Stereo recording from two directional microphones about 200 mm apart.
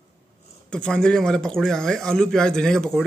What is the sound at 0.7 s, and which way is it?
Speech, 5° left (ahead or behind).